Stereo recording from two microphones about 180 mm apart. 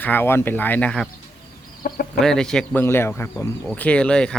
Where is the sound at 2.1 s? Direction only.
5° left (ahead or behind).